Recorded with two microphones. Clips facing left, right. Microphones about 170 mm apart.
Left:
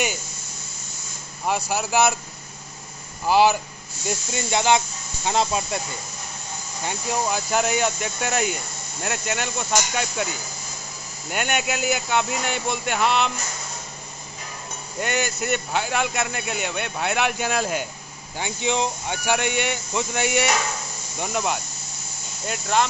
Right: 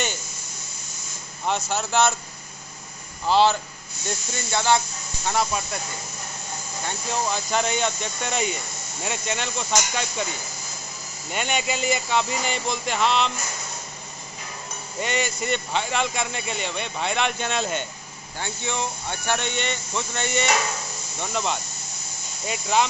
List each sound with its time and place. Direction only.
1.7 s speech: 10° left (ahead or behind)
3.3 s speech: 10° left (ahead or behind)
6.9 s speech: 5° left (ahead or behind)
11.2 s speech: 5° left (ahead or behind)
15.0 s speech: centre (ahead or behind)
18.4 s speech: 15° left (ahead or behind); by 22.8 s centre (ahead or behind)